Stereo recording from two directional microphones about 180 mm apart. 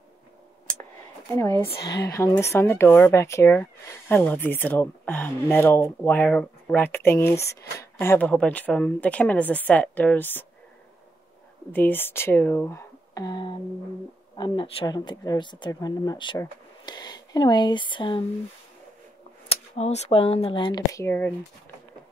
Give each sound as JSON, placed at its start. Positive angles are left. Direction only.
{"t": 1.3, "sound": "speech", "side_deg": 15}
{"t": 11.7, "sound": "speech", "side_deg": 10}
{"t": 19.5, "sound": "speech", "side_deg": 35}